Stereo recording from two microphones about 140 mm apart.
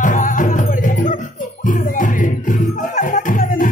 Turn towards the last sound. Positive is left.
turn(degrees=75)  # may be behind; listen again after turning